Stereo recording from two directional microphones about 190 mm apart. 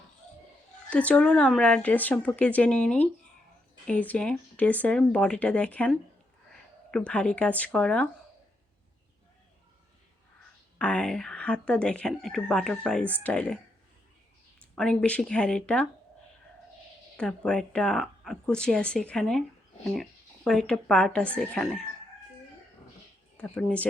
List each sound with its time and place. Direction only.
0.9 s speech: 5° left (ahead or behind)
10.8 s speech: 5° left (ahead or behind)
14.8 s speech: 5° left (ahead or behind)
17.2 s speech: 5° left (ahead or behind)
23.4 s speech: 5° left (ahead or behind)